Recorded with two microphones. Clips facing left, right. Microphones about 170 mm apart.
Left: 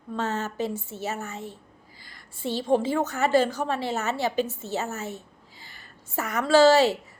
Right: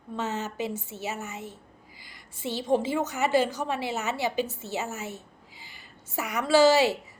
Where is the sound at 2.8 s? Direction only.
15° right (ahead or behind).